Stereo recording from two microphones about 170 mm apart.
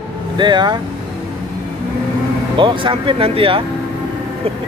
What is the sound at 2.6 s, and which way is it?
Speech, 30° right (ahead or behind).